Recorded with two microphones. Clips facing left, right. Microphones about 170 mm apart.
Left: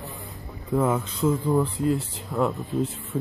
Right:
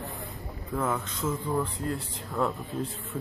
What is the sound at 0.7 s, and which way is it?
Speech, 15° left (ahead or behind).